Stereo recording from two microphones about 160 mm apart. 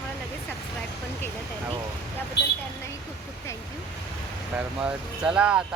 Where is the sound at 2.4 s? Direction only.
90° left.